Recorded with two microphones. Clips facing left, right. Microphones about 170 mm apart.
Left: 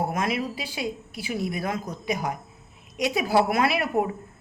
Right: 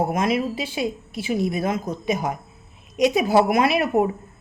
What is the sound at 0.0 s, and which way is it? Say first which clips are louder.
A woman's voice: right 5 dB; 20° right (ahead or behind).